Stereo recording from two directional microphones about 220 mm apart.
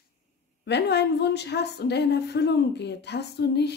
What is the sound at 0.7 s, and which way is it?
A woman's voice, 50° left (ahead or behind).